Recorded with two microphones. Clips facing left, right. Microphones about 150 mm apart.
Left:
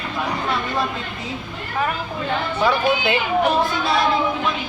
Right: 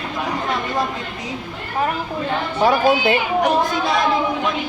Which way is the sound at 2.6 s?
40° right (ahead or behind).